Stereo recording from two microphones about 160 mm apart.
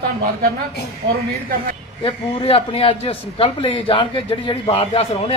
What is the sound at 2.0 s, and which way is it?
A man's voice, 35° left (ahead or behind).